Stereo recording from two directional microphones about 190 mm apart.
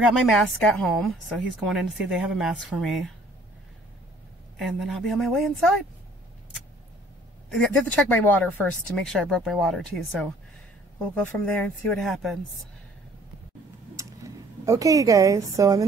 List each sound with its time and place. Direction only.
0.1 s speech: 5° left (ahead or behind)
4.6 s speech: centre (ahead or behind)
7.5 s speech: 5° left (ahead or behind)
11.3 s speech: 5° left (ahead or behind)
13.9 s a sound: 15° right (ahead or behind)